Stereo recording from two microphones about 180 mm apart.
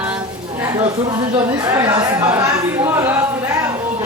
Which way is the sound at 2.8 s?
10° right (ahead or behind).